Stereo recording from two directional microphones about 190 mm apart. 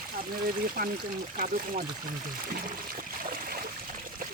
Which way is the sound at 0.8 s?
50° right (ahead or behind).